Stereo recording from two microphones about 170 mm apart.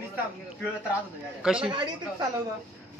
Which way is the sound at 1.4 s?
5° right (ahead or behind).